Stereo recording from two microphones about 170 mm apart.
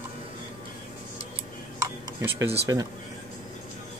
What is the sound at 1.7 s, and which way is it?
Tick-tock, 15° right (ahead or behind).